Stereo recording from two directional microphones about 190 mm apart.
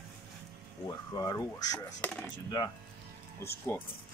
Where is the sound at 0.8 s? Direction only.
20° left (ahead or behind).